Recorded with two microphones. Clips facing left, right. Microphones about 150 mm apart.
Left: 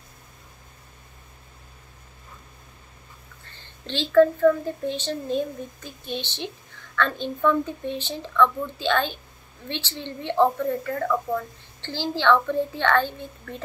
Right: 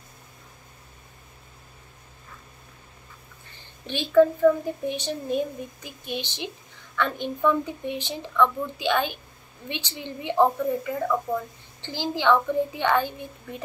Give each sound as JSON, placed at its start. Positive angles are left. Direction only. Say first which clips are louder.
{"t": 3.4, "sound": "a woman's voice", "louder": "even", "side_deg": -15}